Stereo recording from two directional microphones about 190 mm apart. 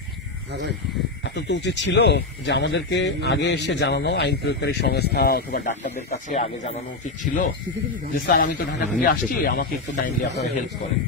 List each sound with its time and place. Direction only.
1.3 s speech: 65° left (ahead or behind)
8.1 s speech: 45° left (ahead or behind)